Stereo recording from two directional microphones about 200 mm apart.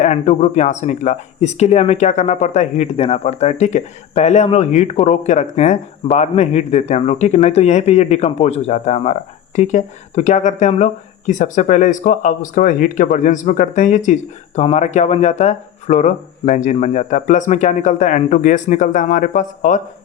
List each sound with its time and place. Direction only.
0.0 s speech: 35° left (ahead or behind)